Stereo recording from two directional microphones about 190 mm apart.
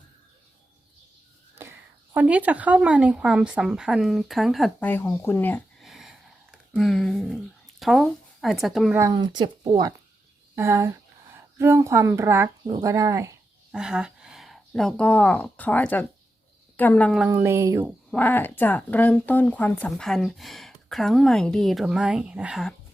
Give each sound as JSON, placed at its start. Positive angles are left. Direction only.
{"t": 2.1, "sound": "speech", "side_deg": -10}
{"t": 9.0, "sound": "a woman's voice", "side_deg": -20}
{"t": 13.7, "sound": "a woman's voice", "side_deg": -5}
{"t": 17.2, "sound": "speech", "side_deg": -10}
{"t": 18.1, "sound": "speech", "side_deg": 10}